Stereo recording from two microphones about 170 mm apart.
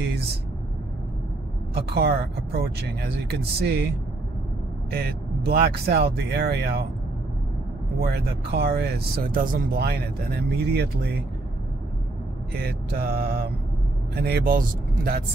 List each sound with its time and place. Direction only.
1.7 s speech: 70° right (ahead or behind)
4.9 s speech: 65° right (ahead or behind)
8.0 s speech: 70° right (ahead or behind)
12.6 s speech: 65° right (ahead or behind)